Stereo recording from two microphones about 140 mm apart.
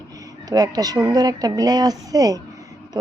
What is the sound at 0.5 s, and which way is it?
A woman's voice, 25° right (ahead or behind).